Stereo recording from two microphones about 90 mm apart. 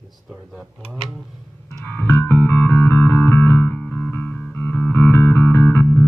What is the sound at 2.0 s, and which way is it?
Music, 25° left (ahead or behind).